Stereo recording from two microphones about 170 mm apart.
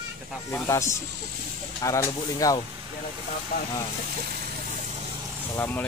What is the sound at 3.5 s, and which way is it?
Speech, 60° left (ahead or behind).